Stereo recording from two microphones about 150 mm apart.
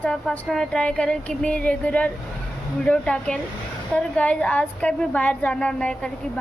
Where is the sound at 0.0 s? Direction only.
5° left (ahead or behind).